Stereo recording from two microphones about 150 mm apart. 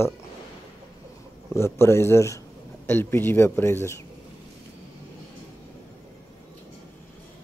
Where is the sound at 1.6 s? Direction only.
15° left (ahead or behind).